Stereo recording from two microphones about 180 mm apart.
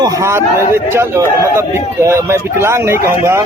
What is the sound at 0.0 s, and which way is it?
A man's voice, 15° right (ahead or behind).